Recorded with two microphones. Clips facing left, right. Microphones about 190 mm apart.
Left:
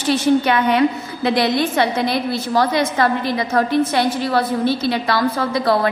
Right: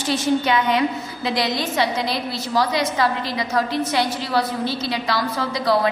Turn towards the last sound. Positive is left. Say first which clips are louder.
# left 3 dB
turn(degrees=55)  # may be behind; listen again after turning